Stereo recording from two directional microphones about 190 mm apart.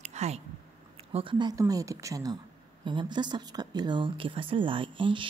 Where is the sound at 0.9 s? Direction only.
30° right (ahead or behind).